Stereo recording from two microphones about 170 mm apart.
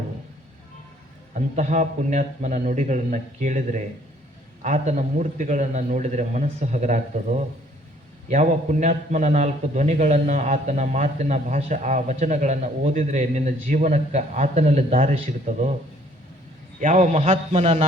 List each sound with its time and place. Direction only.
1.5 s a man's voice: 45° right (ahead or behind)
16.8 s a man's voice: 45° right (ahead or behind)